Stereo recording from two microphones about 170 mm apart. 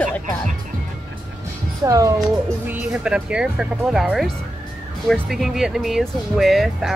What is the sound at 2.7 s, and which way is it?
Speech, 5° right (ahead or behind).